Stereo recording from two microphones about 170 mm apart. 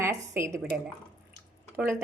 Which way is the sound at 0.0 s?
15° right (ahead or behind).